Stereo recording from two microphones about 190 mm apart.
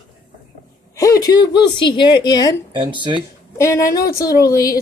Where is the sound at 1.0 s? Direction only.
20° left (ahead or behind).